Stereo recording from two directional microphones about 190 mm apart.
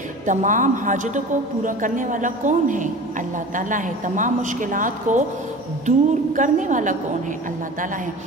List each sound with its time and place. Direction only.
0.3 s a woman's voice: 40° right (ahead or behind)